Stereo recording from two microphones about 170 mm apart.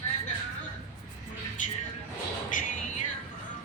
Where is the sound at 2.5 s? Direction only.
50° left (ahead or behind).